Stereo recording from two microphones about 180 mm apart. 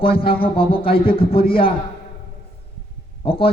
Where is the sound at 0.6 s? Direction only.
55° left (ahead or behind).